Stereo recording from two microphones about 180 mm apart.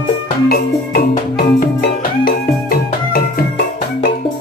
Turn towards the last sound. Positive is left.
turn(degrees=55)  # may be behind; listen again after turning